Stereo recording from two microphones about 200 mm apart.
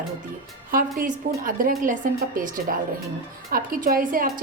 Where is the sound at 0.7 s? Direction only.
45° right (ahead or behind).